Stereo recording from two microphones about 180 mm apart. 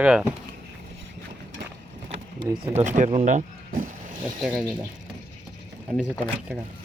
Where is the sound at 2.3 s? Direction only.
35° right (ahead or behind).